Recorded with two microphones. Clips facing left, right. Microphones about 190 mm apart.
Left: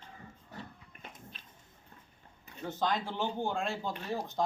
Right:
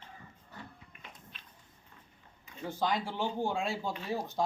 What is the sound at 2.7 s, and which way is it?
A man's voice, 10° right (ahead or behind).